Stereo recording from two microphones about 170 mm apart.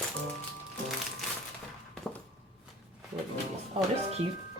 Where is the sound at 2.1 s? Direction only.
5° left (ahead or behind).